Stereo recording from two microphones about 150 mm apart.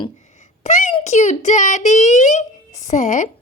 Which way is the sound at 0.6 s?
50° left (ahead or behind).